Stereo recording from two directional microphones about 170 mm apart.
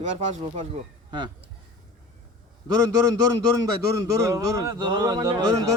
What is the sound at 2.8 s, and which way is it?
A man's voice, 20° right (ahead or behind).